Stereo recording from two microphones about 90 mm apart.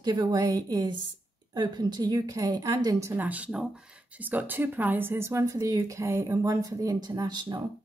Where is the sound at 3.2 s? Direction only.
15° right (ahead or behind).